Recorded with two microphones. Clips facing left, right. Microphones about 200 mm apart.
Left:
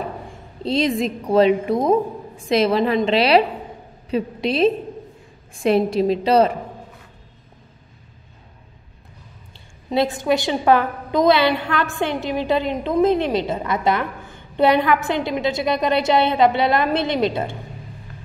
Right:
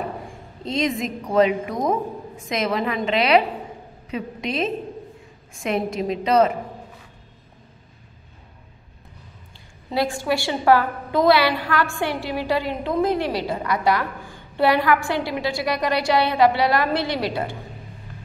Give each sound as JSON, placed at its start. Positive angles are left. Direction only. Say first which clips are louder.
{"t": 0.7, "sound": "a woman's voice", "louder": "left 4 dB", "side_deg": 30}
{"t": 9.8, "sound": "a woman's voice", "louder": "left 4 dB", "side_deg": 20}